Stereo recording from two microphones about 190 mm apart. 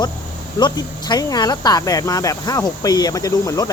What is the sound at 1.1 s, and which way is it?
Speech, 20° left (ahead or behind).